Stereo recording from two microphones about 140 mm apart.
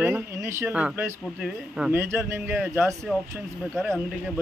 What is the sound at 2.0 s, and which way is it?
Speech, 20° right (ahead or behind).